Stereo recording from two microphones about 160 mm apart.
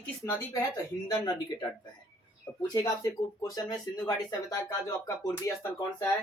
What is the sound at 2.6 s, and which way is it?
Speech, 25° left (ahead or behind).